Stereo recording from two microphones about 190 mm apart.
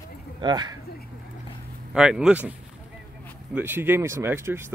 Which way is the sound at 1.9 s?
5° right (ahead or behind).